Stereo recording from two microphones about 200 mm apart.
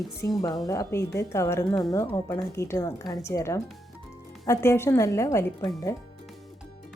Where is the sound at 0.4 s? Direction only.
15° left (ahead or behind).